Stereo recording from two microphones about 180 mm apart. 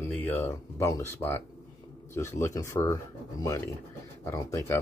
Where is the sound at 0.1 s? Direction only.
10° left (ahead or behind).